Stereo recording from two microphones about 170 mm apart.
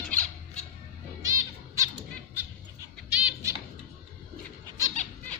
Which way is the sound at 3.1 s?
10° right (ahead or behind).